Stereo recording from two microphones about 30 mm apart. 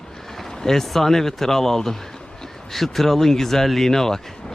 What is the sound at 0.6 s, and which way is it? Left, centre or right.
Speech, centre.